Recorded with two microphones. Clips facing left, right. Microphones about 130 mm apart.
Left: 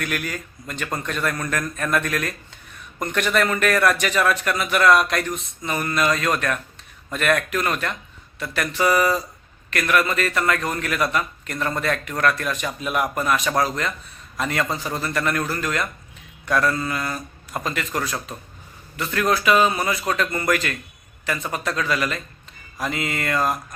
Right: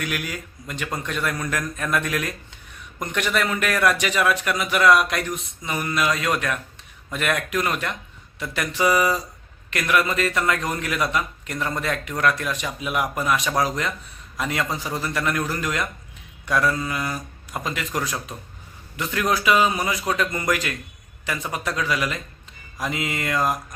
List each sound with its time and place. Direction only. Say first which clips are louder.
0.0 s a man's voice: left 1 dB; 10° right (ahead or behind)